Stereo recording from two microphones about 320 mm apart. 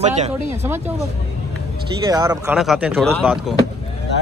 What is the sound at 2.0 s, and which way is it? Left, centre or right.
Speech, centre.